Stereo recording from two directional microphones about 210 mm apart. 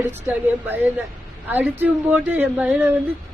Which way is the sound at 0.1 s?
10° right (ahead or behind).